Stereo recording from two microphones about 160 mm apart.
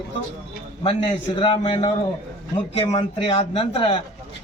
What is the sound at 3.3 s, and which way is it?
Speech, 35° left (ahead or behind).